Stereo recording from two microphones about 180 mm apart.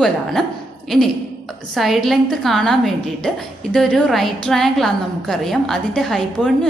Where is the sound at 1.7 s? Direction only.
Centre (ahead or behind).